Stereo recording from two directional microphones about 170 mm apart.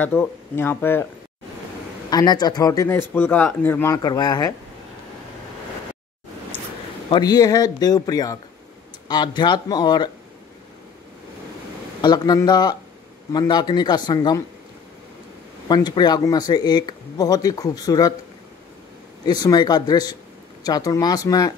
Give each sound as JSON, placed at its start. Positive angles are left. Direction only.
{"t": 0.0, "sound": "speech", "side_deg": 10}
{"t": 2.0, "sound": "speech", "side_deg": 25}
{"t": 7.1, "sound": "speech", "side_deg": 25}
{"t": 12.0, "sound": "speech", "side_deg": 25}
{"t": 15.7, "sound": "speech", "side_deg": 25}
{"t": 19.2, "sound": "speech", "side_deg": 25}